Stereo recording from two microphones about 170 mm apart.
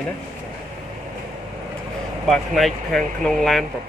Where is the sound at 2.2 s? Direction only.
Centre (ahead or behind).